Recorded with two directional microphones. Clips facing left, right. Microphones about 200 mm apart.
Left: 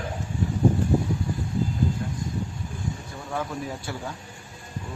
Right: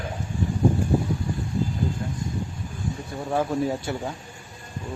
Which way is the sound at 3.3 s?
30° right (ahead or behind).